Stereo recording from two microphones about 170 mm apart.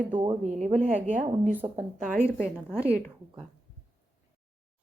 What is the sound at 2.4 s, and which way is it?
Speech, 5° right (ahead or behind).